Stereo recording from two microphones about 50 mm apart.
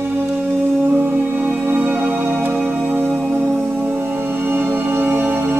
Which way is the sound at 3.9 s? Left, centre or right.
Right.